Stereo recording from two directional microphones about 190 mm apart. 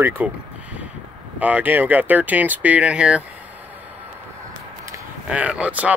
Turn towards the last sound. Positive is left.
turn(degrees=-5)  # may be behind; listen again after turning